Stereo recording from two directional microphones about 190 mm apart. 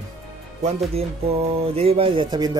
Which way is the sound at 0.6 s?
35° right (ahead or behind).